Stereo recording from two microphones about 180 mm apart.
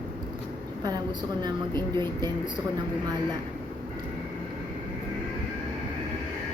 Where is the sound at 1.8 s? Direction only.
25° right (ahead or behind).